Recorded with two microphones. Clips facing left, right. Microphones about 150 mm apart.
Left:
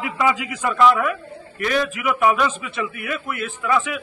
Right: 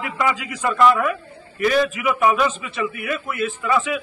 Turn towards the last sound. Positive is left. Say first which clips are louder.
# right 1 dB
turn(degrees=0)  # may be behind; listen again after turning